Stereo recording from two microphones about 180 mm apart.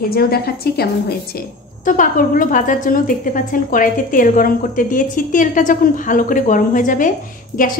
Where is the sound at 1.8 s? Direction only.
50° left (ahead or behind).